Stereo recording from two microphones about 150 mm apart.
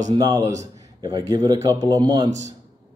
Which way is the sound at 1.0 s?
25° right (ahead or behind).